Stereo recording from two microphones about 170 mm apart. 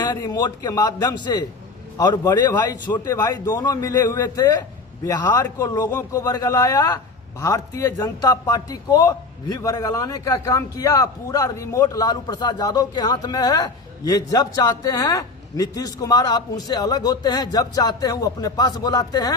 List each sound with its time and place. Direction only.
0.0 s a man's voice: 25° left (ahead or behind)